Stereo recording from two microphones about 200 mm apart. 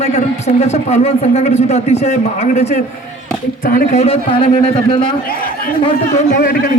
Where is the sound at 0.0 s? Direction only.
30° left (ahead or behind).